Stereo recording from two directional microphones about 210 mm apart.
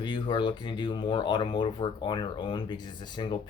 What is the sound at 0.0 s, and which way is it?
Speech, 20° left (ahead or behind).